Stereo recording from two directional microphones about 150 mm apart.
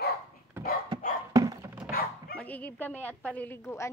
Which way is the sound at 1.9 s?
75° left (ahead or behind).